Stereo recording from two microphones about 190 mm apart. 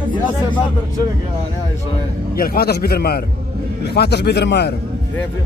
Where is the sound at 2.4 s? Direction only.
55° left (ahead or behind).